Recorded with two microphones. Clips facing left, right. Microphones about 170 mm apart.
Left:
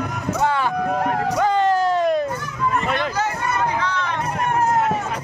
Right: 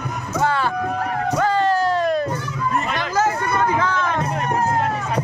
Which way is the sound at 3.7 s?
50° right (ahead or behind).